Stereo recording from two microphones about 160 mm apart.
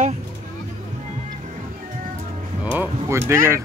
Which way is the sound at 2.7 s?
15° right (ahead or behind).